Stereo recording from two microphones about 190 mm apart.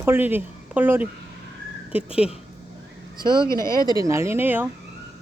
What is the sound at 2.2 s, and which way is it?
Speech, 5° right (ahead or behind).